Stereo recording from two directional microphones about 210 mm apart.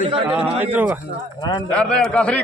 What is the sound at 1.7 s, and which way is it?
Speech, 5° left (ahead or behind).